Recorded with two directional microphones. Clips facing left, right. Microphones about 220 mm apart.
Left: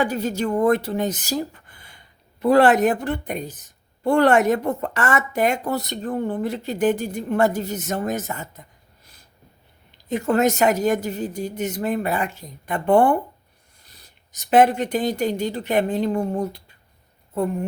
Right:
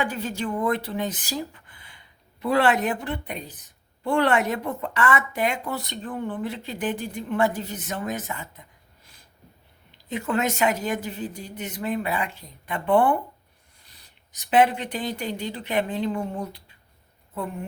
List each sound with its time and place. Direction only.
0.0 s a woman's voice: 40° left (ahead or behind)
10.1 s a woman's voice: 45° left (ahead or behind)